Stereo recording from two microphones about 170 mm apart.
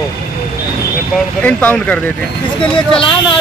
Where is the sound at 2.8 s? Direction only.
30° left (ahead or behind).